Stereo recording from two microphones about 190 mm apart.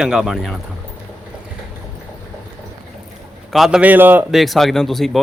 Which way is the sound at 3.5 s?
Centre (ahead or behind).